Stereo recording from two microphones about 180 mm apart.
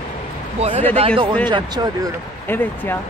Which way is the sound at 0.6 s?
35° right (ahead or behind).